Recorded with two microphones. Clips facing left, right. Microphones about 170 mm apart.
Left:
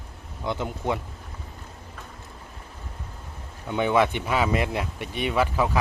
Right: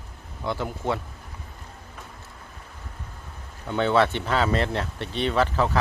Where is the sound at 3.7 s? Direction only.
15° left (ahead or behind).